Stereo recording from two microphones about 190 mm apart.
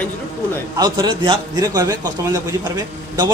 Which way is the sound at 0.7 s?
25° right (ahead or behind).